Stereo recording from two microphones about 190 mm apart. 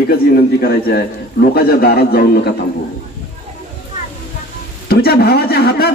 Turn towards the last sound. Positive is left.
turn(degrees=55)  # may be behind; listen again after turning